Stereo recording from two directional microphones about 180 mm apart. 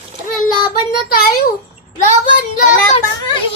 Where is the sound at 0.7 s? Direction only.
55° left (ahead or behind).